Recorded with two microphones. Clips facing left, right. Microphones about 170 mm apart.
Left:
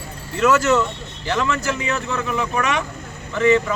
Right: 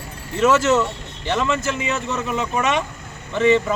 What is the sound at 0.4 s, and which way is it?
A man's voice, 25° right (ahead or behind).